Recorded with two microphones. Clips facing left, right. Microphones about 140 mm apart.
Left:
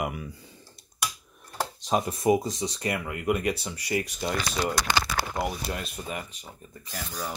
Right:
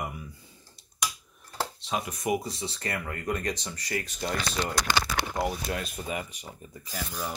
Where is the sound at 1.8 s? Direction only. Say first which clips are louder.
Left 9 dB; 40° left (ahead or behind).